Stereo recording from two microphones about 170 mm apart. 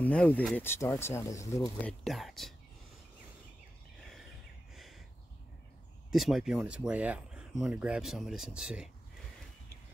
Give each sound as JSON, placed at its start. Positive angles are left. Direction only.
{"t": 0.0, "sound": "speech", "side_deg": 10}
{"t": 1.8, "sound": "speech", "side_deg": 5}
{"t": 4.7, "sound": "a sound", "side_deg": 0}
{"t": 6.1, "sound": "speech", "side_deg": 0}